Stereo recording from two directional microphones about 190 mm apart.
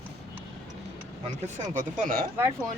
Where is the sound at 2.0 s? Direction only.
45° right (ahead or behind).